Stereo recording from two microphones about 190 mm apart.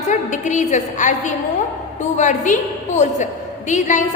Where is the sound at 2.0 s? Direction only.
40° left (ahead or behind).